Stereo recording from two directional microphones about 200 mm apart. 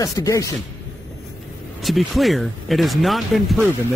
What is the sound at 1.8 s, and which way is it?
Speech, centre (ahead or behind).